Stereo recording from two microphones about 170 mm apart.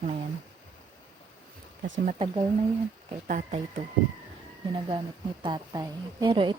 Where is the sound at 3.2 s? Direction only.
50° right (ahead or behind).